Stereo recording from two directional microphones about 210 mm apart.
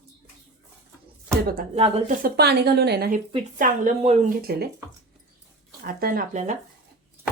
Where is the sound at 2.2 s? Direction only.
50° right (ahead or behind).